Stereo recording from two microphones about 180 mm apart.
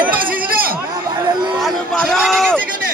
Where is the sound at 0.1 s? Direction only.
50° right (ahead or behind).